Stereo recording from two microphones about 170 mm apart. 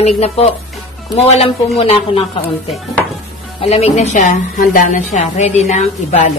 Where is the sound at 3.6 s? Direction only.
40° left (ahead or behind).